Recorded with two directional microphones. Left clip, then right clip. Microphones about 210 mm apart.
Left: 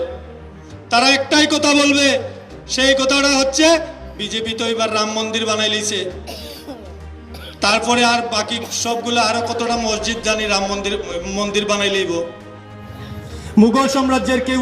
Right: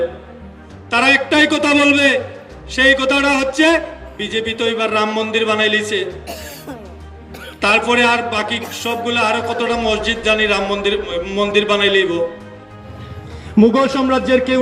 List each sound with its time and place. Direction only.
0.9 s a man's voice: 30° left (ahead or behind)
7.6 s a man's voice: 30° left (ahead or behind)
13.6 s speech: 55° left (ahead or behind)